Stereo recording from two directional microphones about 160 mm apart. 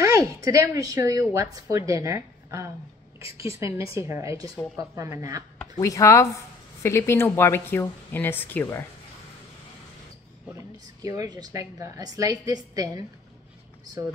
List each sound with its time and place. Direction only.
0.0 s a woman's voice: 20° right (ahead or behind)
5.8 s a woman's voice: 20° left (ahead or behind)
11.0 s a woman's voice: 20° right (ahead or behind)